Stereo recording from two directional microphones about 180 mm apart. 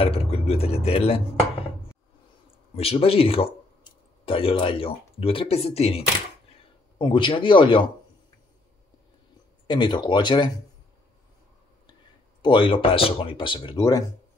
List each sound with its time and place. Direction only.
0.0 s speech: 35° left (ahead or behind)
2.7 s speech: 35° left (ahead or behind)
9.7 s speech: 25° left (ahead or behind)
12.4 s speech: 25° left (ahead or behind)